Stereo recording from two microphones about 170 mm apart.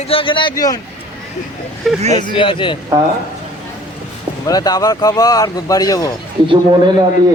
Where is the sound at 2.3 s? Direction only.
30° left (ahead or behind).